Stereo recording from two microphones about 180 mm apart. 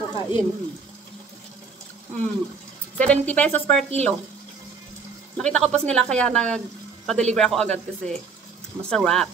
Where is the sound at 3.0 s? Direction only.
10° left (ahead or behind).